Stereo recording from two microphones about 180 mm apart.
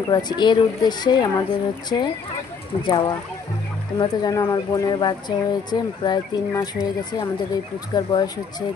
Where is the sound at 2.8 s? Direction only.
25° left (ahead or behind).